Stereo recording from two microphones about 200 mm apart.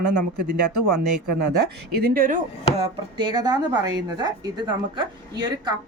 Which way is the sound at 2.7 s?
25° right (ahead or behind).